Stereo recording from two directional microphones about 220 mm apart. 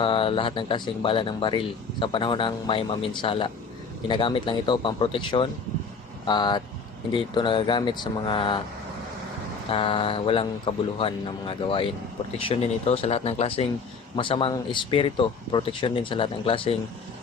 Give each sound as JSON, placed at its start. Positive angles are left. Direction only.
{"t": 0.0, "sound": "speech", "side_deg": 25}
{"t": 9.6, "sound": "speech", "side_deg": 25}